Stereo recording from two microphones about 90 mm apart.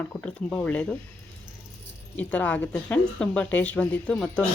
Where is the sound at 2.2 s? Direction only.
15° left (ahead or behind).